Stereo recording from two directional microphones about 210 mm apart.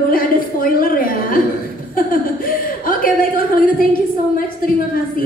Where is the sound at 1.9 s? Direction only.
40° left (ahead or behind).